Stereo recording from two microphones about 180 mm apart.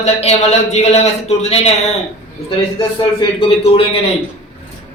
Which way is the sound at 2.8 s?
30° left (ahead or behind).